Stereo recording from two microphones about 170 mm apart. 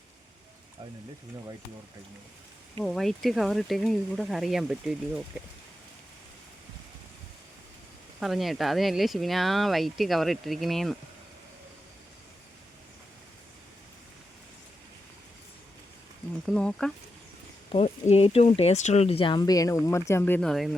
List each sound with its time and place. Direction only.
2.8 s speech: centre (ahead or behind)
8.2 s speech: centre (ahead or behind)
16.5 s speech: 5° left (ahead or behind)
17.7 s speech: 40° left (ahead or behind); by 20.7 s 5° left (ahead or behind)